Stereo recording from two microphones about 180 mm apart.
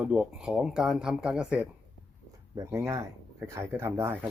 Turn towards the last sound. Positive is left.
turn(degrees=-15)  # may be behind; listen again after turning